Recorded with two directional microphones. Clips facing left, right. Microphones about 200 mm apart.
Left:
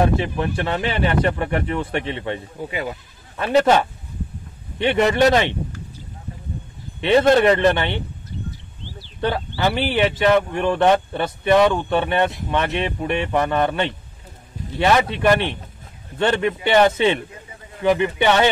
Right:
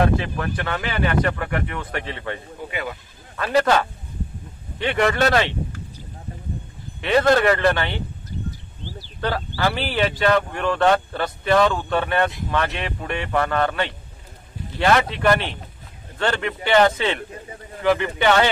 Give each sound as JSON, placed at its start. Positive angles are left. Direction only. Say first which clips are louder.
{"t": 0.2, "sound": "speech", "louder": "left 4 dB", "side_deg": 25}
{"t": 7.0, "sound": "speech", "louder": "left 3 dB", "side_deg": 20}
{"t": 9.0, "sound": "speech", "louder": "left 3 dB", "side_deg": 25}